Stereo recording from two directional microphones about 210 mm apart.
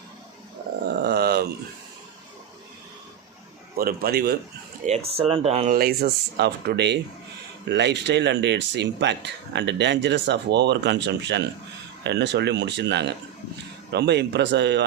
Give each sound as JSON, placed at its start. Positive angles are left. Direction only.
{"t": 1.0, "sound": "a sound", "side_deg": -50}
{"t": 3.8, "sound": "speech", "side_deg": -45}
{"t": 4.9, "sound": "speech", "side_deg": -25}
{"t": 5.7, "sound": "speech", "side_deg": -50}